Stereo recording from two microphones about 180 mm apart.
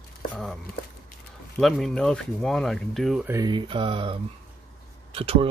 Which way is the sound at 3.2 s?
20° right (ahead or behind).